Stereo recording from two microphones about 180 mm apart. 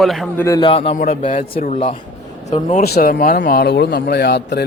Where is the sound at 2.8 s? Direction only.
55° left (ahead or behind).